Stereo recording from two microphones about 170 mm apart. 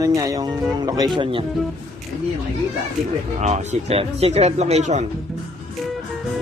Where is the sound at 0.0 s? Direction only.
20° right (ahead or behind).